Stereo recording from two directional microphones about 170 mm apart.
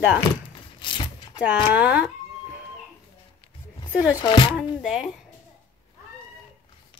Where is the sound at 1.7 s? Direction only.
10° right (ahead or behind).